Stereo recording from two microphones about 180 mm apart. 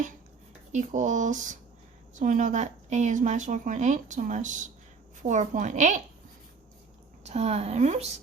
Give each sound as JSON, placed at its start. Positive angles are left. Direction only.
{"t": 0.7, "sound": "a woman's voice", "side_deg": -40}
{"t": 7.3, "sound": "a woman's voice", "side_deg": -35}